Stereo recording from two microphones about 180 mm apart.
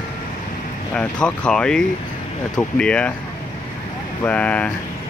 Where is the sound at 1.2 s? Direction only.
5° left (ahead or behind).